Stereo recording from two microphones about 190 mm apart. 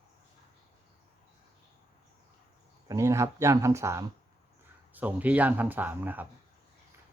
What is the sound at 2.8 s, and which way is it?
Speech, 15° right (ahead or behind).